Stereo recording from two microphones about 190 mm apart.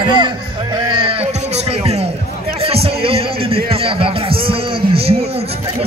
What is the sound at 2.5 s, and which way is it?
A man's voice, 30° right (ahead or behind).